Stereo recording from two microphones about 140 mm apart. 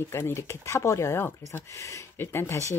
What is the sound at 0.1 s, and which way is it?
Speech, 15° left (ahead or behind).